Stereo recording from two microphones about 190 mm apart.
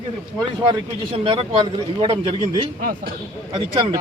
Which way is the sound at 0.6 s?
25° right (ahead or behind).